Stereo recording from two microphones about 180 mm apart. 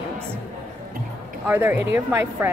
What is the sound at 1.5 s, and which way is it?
Speech, 10° right (ahead or behind).